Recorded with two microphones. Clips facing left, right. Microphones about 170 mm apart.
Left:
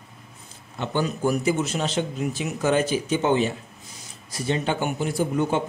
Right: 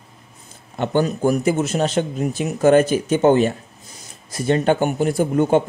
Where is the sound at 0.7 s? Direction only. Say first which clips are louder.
Right 6 dB; 50° right (ahead or behind).